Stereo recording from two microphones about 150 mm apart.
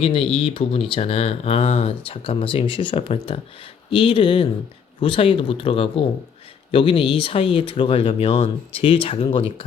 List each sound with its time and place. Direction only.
0.0 s speech: 40° left (ahead or behind)